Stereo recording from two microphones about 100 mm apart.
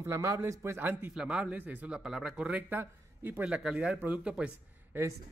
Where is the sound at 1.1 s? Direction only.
5° right (ahead or behind).